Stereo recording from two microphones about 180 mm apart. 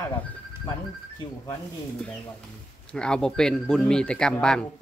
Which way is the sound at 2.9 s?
5° left (ahead or behind).